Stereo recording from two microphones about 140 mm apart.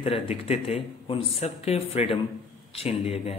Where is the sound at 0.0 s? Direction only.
45° left (ahead or behind).